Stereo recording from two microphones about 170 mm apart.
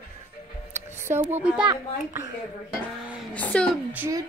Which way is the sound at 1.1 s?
10° right (ahead or behind).